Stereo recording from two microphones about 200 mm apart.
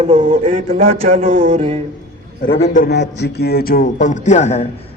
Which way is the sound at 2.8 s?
55° left (ahead or behind).